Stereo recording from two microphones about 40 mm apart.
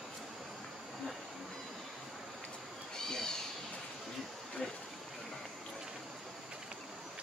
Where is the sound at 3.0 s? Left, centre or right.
Centre.